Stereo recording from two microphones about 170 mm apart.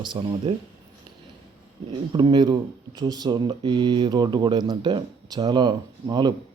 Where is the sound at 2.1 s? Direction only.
25° right (ahead or behind).